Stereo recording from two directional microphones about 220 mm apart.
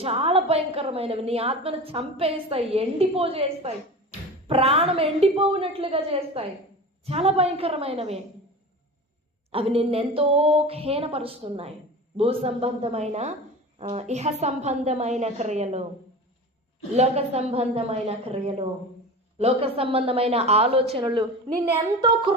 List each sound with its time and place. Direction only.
0.0 s a woman's voice: 25° right (ahead or behind)
9.5 s a woman's voice: 25° right (ahead or behind)
16.9 s a woman's voice: 30° right (ahead or behind)